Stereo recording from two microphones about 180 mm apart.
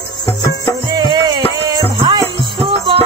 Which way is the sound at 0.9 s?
25° right (ahead or behind).